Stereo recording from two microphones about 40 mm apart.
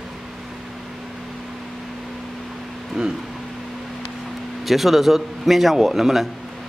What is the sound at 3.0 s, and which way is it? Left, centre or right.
Speech, centre.